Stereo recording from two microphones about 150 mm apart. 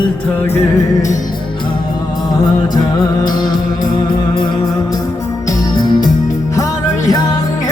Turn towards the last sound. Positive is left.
turn(degrees=30)  # may be behind; listen again after turning